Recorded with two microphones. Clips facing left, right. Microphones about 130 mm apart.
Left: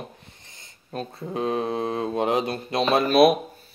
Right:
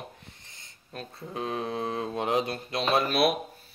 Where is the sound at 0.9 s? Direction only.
35° left (ahead or behind).